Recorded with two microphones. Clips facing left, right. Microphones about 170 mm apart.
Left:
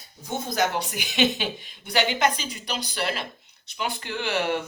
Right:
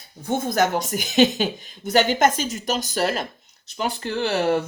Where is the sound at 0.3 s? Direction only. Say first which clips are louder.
Right 5 dB; 50° right (ahead or behind).